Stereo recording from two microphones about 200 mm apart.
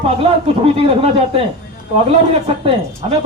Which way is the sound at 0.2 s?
30° right (ahead or behind).